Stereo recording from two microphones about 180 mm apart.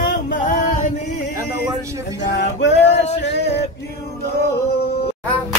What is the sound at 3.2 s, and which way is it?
Music, 70° left (ahead or behind).